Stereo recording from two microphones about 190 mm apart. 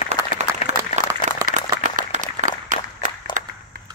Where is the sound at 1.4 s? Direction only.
40° right (ahead or behind).